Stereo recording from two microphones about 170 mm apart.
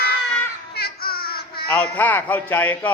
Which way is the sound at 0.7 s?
65° left (ahead or behind).